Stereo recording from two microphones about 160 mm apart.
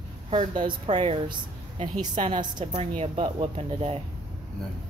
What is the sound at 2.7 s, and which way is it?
A woman's voice, 40° right (ahead or behind).